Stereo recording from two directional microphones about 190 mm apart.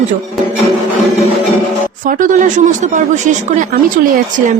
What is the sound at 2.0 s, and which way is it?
Speech, 45° right (ahead or behind).